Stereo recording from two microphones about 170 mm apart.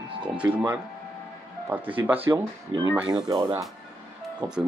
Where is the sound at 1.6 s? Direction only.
10° right (ahead or behind).